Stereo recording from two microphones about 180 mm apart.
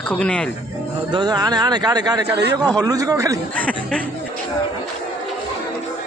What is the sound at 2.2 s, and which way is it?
Speech, 70° right (ahead or behind).